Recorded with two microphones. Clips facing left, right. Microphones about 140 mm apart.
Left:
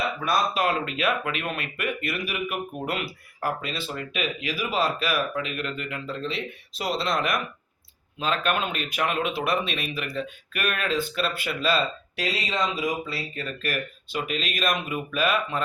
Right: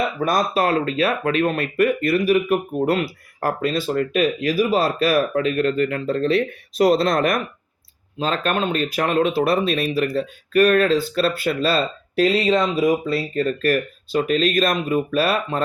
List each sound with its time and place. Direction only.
0.2 s speech: 45° right (ahead or behind)